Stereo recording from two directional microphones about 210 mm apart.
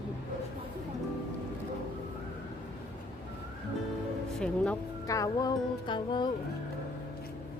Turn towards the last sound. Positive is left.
turn(degrees=20)  # may be behind; listen again after turning